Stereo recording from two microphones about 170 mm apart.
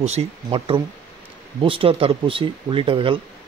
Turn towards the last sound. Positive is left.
turn(degrees=-30)  # may be behind; listen again after turning